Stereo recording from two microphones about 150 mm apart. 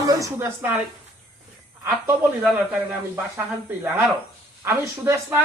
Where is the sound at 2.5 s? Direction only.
15° right (ahead or behind).